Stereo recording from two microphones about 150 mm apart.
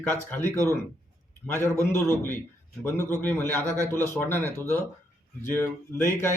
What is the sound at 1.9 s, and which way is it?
Speech, 15° left (ahead or behind).